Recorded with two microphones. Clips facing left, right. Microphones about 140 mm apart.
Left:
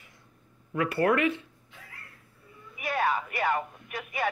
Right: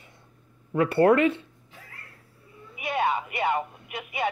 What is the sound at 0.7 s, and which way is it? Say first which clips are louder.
Speech: right 6 dB; 30° right (ahead or behind).